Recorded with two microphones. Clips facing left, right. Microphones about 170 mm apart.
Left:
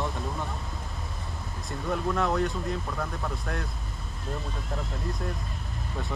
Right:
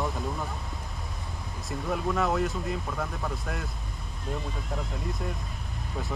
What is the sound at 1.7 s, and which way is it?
Speech, centre (ahead or behind).